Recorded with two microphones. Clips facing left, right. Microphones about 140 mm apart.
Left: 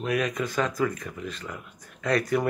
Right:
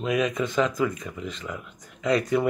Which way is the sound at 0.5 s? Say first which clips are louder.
Right 2 dB; 20° right (ahead or behind).